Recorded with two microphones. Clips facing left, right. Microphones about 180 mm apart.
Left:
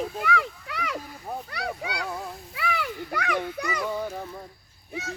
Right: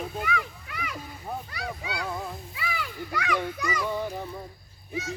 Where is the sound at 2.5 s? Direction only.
65° left (ahead or behind).